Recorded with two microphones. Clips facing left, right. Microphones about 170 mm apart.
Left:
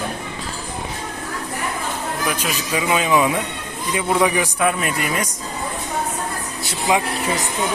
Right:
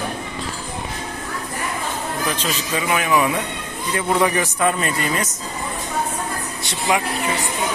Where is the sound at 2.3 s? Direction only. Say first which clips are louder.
Left 1 dB; 15° left (ahead or behind).